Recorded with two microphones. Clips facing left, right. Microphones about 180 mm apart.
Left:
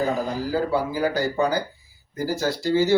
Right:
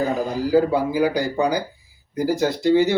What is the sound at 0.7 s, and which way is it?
Speech, 15° right (ahead or behind).